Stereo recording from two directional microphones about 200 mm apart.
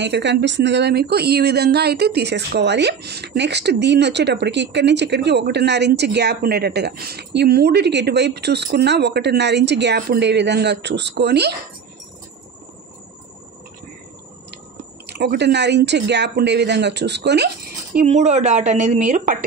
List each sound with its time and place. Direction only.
0.0 s speech: 60° right (ahead or behind)
15.1 s speech: 55° right (ahead or behind)
17.9 s a woman's voice: 35° right (ahead or behind)